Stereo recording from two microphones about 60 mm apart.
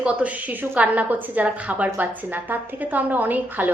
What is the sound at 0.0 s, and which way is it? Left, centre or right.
A woman's voice, right.